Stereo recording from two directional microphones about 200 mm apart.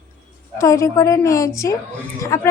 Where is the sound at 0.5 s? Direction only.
15° left (ahead or behind).